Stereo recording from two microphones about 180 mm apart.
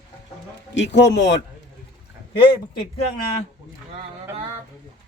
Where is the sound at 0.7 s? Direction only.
85° left.